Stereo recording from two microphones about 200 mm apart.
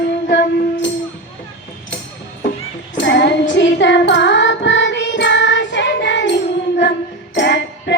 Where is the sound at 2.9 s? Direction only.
60° left (ahead or behind).